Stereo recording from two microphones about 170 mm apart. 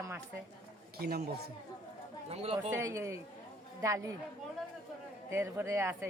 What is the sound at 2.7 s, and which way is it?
Speech, 15° right (ahead or behind).